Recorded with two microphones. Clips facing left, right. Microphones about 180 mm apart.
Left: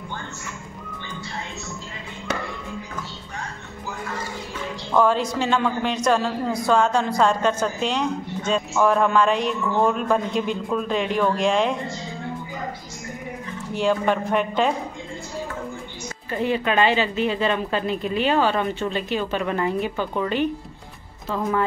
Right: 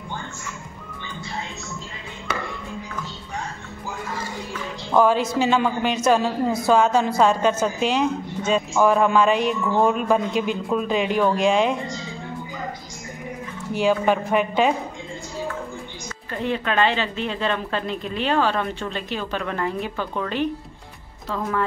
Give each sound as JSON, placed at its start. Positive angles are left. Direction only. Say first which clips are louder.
{"t": 4.9, "sound": "a woman's voice", "louder": "right 2 dB", "side_deg": -5}
{"t": 13.7, "sound": "a woman's voice", "louder": "right 1 dB", "side_deg": -5}
{"t": 16.3, "sound": "a woman's voice", "louder": "left 2 dB", "side_deg": 5}